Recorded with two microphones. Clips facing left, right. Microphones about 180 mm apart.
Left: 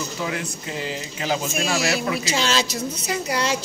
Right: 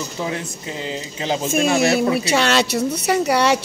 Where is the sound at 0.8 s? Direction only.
25° right (ahead or behind).